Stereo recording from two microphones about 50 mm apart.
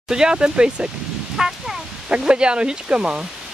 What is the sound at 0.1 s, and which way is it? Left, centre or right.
Speech, centre.